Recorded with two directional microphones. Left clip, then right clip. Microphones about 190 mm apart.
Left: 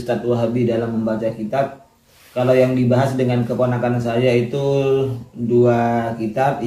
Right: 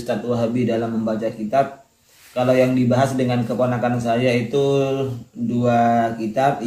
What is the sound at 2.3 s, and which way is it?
Speech, 5° right (ahead or behind).